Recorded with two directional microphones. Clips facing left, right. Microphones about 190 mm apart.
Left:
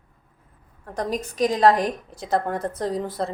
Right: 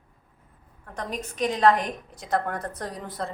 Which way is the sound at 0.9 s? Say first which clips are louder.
Left 6 dB; 35° left (ahead or behind).